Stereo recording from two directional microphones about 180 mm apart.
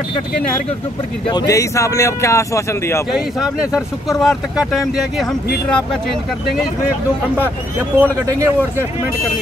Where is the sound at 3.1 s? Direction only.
5° right (ahead or behind).